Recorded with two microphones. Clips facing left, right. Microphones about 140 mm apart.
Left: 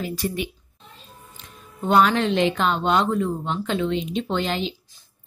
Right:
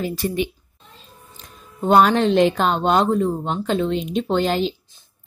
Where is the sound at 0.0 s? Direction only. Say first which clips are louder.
Right 4 dB; 25° right (ahead or behind).